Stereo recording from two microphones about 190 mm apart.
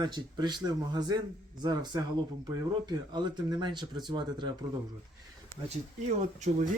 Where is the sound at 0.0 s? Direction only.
20° right (ahead or behind).